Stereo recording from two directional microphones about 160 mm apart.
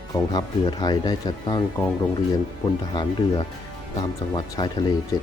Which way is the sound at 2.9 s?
30° left (ahead or behind).